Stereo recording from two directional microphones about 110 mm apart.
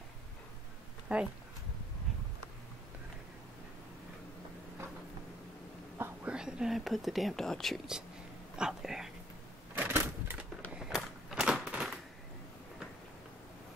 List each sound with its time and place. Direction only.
1.1 s speech: 10° right (ahead or behind)
6.2 s speech: 10° right (ahead or behind)
9.8 s typewriter: 20° right (ahead or behind)
10.7 s a sound: 5° right (ahead or behind)